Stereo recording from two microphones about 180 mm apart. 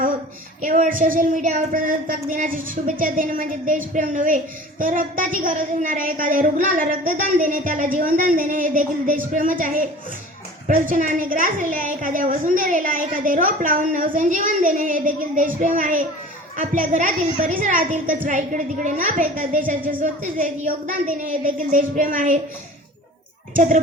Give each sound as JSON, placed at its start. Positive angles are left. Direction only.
{"t": 0.6, "sound": "a woman's voice", "side_deg": -45}
{"t": 23.6, "sound": "a woman's voice", "side_deg": -45}